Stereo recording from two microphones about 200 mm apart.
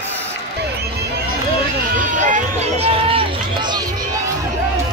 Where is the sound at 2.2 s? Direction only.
35° right (ahead or behind).